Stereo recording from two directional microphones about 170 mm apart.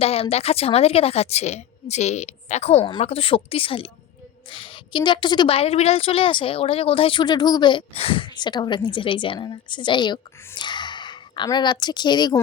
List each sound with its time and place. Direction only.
0.0 s a woman's voice: 35° left (ahead or behind)